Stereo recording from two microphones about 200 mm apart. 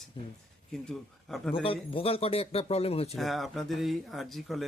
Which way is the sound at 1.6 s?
30° left (ahead or behind).